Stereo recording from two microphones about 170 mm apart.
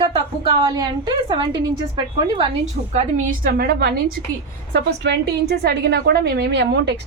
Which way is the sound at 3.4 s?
65° right (ahead or behind).